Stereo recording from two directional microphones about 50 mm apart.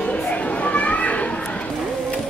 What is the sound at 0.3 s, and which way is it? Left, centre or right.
Children playing, left.